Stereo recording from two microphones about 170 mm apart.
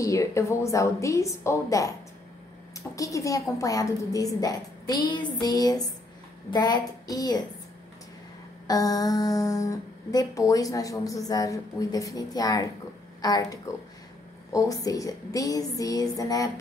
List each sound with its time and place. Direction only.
0.0 s a woman's voice: 20° left (ahead or behind)
3.0 s speech: 20° left (ahead or behind)
8.6 s speech: 20° left (ahead or behind)